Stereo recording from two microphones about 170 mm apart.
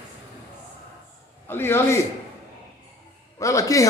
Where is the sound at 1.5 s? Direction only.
15° left (ahead or behind).